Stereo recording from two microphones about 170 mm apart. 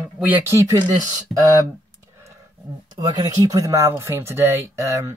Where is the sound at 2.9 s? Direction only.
25° right (ahead or behind).